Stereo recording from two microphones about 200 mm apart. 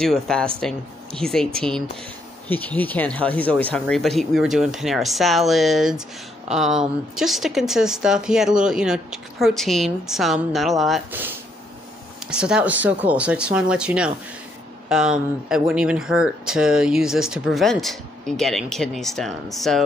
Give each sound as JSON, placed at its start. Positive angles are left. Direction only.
{"t": 0.0, "sound": "speech", "side_deg": 5}